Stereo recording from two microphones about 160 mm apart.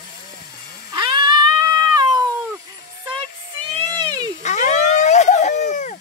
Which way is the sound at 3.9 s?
25° right (ahead or behind).